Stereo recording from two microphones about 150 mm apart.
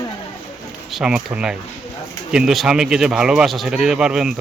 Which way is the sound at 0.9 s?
5° right (ahead or behind).